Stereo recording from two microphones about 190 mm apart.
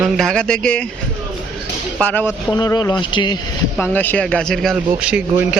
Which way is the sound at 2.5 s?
20° left (ahead or behind).